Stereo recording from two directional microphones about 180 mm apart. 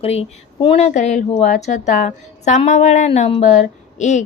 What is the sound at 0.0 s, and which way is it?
Speech, 35° left (ahead or behind).